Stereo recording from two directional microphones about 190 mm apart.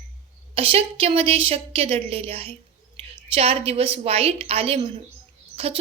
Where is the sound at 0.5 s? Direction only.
30° right (ahead or behind).